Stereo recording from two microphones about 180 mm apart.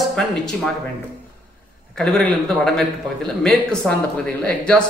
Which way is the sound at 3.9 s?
5° left (ahead or behind).